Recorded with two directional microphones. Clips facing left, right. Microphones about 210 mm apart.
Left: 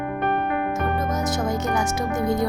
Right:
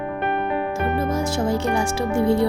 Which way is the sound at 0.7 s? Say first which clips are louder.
Right 2 dB; 30° right (ahead or behind).